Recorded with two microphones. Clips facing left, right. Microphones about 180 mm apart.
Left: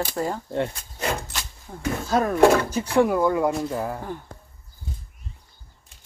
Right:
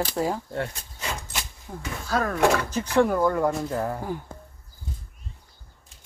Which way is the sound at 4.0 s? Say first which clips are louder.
Right 2 dB; 5° right (ahead or behind).